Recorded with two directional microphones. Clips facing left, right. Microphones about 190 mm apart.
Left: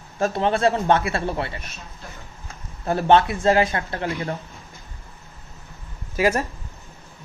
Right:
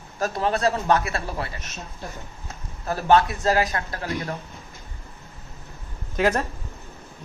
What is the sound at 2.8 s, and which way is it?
Speech, 25° left (ahead or behind).